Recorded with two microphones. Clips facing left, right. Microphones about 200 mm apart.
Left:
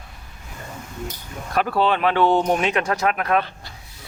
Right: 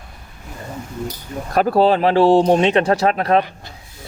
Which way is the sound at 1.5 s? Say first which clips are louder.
Right 6 dB; 40° right (ahead or behind).